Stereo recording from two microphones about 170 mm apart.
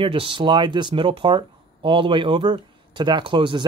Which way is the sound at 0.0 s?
30° right (ahead or behind).